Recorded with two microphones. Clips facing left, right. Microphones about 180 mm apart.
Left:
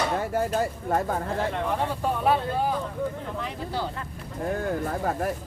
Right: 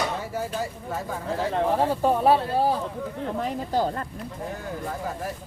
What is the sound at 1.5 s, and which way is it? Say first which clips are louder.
Speech: right 5 dB; 35° right (ahead or behind).